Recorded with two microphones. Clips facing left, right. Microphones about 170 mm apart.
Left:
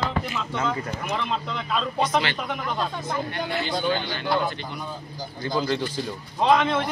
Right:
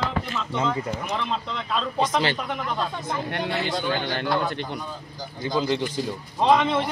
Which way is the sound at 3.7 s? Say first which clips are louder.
Left 1 dB; 15° left (ahead or behind).